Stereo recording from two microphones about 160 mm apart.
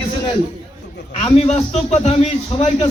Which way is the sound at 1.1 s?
40° left (ahead or behind).